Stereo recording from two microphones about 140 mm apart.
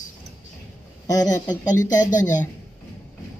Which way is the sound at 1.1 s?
25° left (ahead or behind).